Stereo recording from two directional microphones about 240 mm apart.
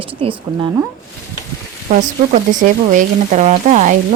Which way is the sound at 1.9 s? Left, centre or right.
Right.